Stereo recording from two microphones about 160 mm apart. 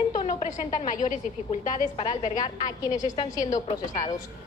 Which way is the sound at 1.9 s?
35° left (ahead or behind).